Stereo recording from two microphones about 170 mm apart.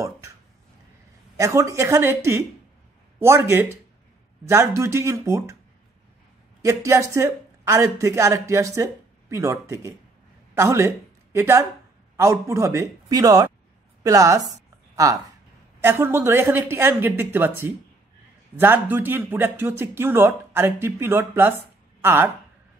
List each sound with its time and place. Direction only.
1.3 s speech: 20° right (ahead or behind)
6.6 s a woman's voice: 15° right (ahead or behind)
14.5 s a sound: 20° right (ahead or behind)
15.8 s speech: 15° right (ahead or behind)